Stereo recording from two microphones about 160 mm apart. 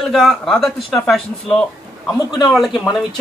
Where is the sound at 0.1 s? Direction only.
Centre (ahead or behind).